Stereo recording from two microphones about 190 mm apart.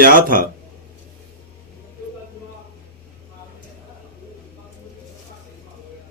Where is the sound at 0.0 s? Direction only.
45° right (ahead or behind).